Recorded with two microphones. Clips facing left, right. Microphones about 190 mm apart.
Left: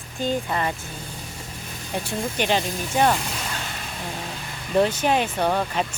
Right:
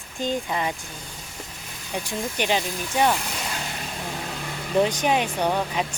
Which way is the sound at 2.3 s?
10° right (ahead or behind).